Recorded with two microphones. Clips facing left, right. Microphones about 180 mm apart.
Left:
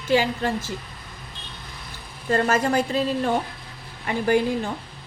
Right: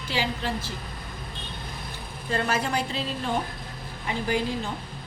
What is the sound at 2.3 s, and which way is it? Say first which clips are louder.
A woman's voice: left 6 dB; 45° left (ahead or behind).